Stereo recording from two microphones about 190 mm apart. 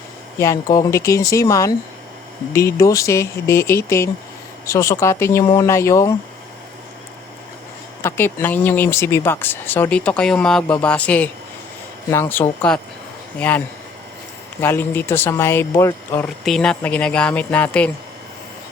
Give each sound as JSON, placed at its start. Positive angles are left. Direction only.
{"t": 0.3, "sound": "speech", "side_deg": 15}
{"t": 8.0, "sound": "speech", "side_deg": 15}
{"t": 14.6, "sound": "speech", "side_deg": 10}